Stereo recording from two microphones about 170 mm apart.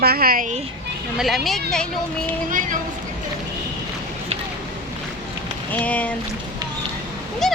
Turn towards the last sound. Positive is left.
turn(degrees=0)  # may be behind; listen again after turning